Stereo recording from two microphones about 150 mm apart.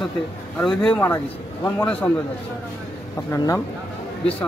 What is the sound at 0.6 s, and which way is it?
Speech, 5° left (ahead or behind).